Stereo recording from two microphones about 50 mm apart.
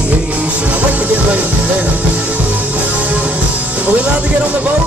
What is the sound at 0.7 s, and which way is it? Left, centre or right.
Music, right.